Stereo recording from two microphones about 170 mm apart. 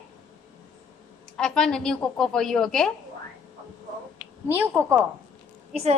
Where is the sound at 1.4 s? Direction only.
5° left (ahead or behind).